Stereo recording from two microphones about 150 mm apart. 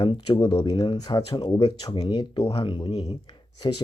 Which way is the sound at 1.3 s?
40° left (ahead or behind).